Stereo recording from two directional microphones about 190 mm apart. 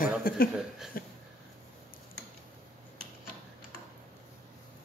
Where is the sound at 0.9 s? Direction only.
50° left (ahead or behind).